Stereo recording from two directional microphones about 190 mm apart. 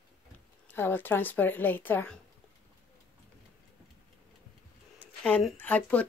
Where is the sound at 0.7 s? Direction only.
10° left (ahead or behind).